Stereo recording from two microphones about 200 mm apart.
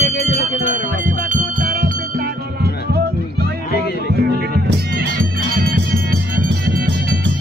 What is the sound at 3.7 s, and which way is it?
Music, 55° left (ahead or behind).